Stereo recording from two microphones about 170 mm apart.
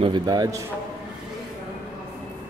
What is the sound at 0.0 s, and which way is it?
Speech, 25° right (ahead or behind).